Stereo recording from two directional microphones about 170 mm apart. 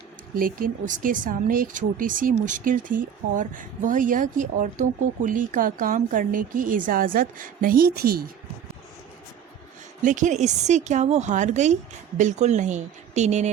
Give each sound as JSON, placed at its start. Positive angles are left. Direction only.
{"t": 0.3, "sound": "speech", "side_deg": -55}
{"t": 10.0, "sound": "speech", "side_deg": -50}